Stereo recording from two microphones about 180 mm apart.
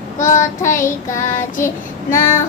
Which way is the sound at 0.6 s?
15° left (ahead or behind).